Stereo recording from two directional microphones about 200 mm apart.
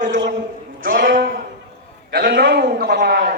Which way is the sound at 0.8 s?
45° right (ahead or behind).